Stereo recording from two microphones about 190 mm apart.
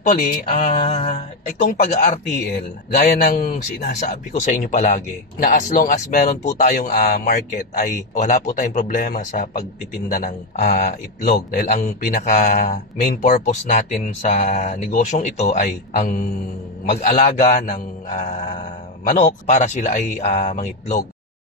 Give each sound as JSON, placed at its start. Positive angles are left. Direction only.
{"t": 0.1, "sound": "speech", "side_deg": 40}
{"t": 3.3, "sound": "speech", "side_deg": 50}
{"t": 4.0, "sound": "speech", "side_deg": 40}
{"t": 7.8, "sound": "speech", "side_deg": 40}